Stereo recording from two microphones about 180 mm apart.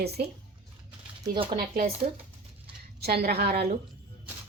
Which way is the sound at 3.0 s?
60° right (ahead or behind).